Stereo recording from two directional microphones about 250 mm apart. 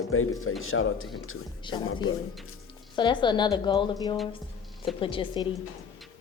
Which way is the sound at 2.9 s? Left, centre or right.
Centre.